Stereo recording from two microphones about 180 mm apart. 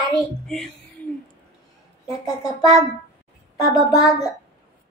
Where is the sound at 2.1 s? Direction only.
20° left (ahead or behind).